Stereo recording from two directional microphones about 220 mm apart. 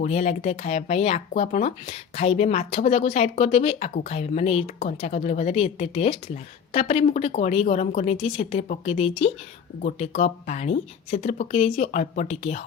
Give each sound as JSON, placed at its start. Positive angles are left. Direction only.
{"t": 0.0, "sound": "speech", "side_deg": 30}